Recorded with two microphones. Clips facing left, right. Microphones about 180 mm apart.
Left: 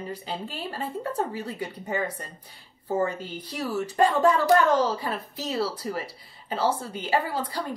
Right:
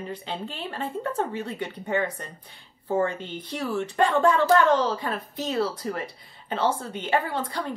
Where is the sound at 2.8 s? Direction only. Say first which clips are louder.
Right 1 dB; 5° left (ahead or behind).